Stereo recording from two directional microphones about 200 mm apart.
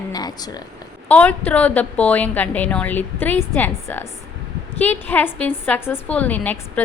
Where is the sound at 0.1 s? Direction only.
20° left (ahead or behind).